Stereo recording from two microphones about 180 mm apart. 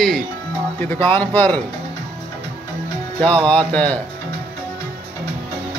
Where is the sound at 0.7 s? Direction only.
10° left (ahead or behind).